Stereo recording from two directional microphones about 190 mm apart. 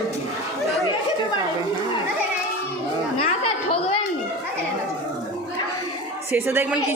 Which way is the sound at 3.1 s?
30° left (ahead or behind).